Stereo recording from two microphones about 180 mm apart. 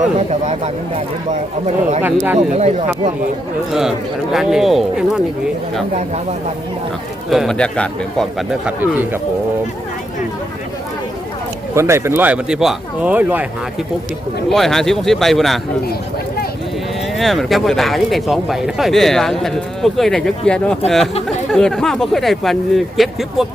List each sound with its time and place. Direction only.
0.3 s speech: 35° right (ahead or behind)
2.0 s speech: 10° right (ahead or behind)
2.5 s speech: 40° right (ahead or behind)
3.7 s speech: centre (ahead or behind)
7.3 s speech: centre (ahead or behind)
11.7 s speech: 15° right (ahead or behind)
14.5 s speech: centre (ahead or behind)
17.2 s speech: centre (ahead or behind)